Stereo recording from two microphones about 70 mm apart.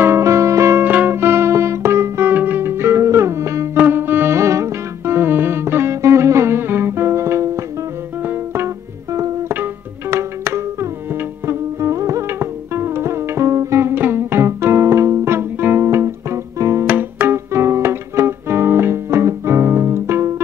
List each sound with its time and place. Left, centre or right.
0.0 s music: right
0.8 s music: right
3.7 s music: right
11.8 s music: right
12.3 s music: right
15.3 s music: right
16.8 s music: right
17.5 s music: right